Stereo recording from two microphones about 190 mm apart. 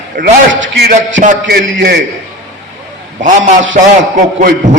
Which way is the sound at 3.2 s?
75° right (ahead or behind).